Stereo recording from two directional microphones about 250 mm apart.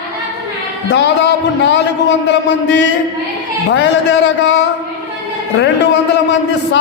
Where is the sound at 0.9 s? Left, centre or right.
Left.